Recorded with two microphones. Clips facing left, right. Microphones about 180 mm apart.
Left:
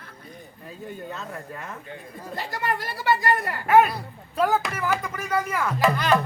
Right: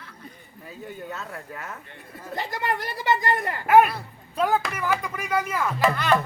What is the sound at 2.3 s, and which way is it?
A woman's voice, 20° right (ahead or behind).